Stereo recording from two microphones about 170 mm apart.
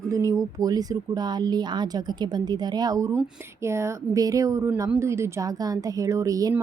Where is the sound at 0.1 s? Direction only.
20° right (ahead or behind).